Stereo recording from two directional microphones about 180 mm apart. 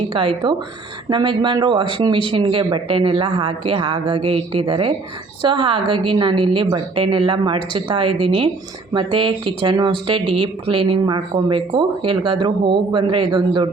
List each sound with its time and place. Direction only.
0.1 s speech: 25° right (ahead or behind)